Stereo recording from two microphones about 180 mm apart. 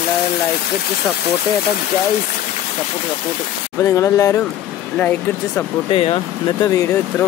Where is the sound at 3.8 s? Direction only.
15° left (ahead or behind).